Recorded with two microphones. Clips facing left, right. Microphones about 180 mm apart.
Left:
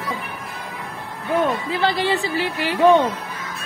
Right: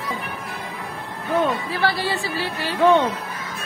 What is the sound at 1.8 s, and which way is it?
Speech, 20° left (ahead or behind).